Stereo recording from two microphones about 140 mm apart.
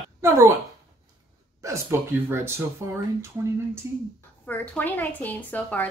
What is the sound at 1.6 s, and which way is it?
Speech, 20° right (ahead or behind).